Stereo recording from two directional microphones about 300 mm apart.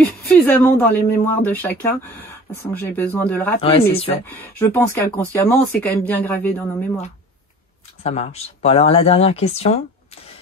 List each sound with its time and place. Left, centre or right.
0.3 s speech: centre
2.8 s speech: centre
3.7 s speech: centre
4.3 s speech: centre
8.0 s speech: left